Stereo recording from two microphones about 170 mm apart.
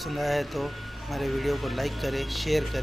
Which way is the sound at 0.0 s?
Centre (ahead or behind).